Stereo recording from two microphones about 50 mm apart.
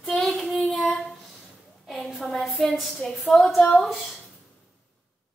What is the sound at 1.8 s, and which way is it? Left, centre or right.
A woman's voice, centre.